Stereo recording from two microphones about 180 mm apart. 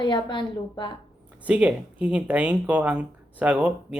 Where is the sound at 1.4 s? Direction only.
5° right (ahead or behind).